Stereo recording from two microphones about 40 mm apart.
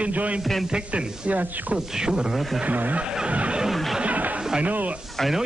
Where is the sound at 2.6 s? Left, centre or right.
Right.